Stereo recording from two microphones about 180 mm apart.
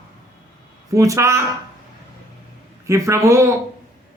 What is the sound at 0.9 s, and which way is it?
Speech, 15° right (ahead or behind).